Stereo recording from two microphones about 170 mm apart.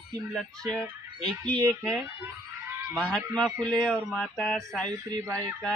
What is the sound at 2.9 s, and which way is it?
Speech, 5° left (ahead or behind).